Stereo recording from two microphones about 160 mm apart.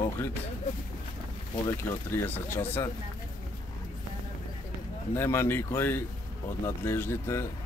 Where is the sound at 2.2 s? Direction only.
15° left (ahead or behind).